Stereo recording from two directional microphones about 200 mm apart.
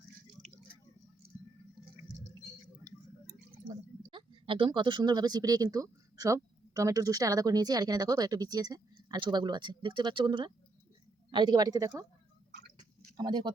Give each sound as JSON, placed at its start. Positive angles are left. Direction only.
{"t": 3.5, "sound": "speech", "side_deg": -25}
{"t": 13.1, "sound": "speech", "side_deg": -20}